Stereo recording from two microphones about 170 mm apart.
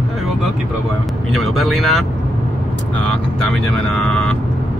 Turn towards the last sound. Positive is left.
turn(degrees=5)  # may be behind; listen again after turning